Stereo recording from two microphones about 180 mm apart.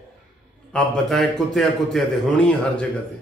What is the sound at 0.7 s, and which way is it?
A man's voice, centre (ahead or behind).